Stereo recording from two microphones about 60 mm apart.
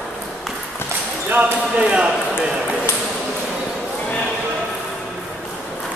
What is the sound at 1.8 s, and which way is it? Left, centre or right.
Speech, centre.